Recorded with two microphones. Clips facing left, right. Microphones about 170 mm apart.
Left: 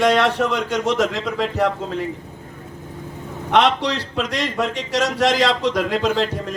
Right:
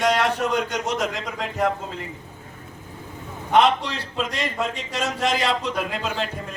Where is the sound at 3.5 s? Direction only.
75° left (ahead or behind).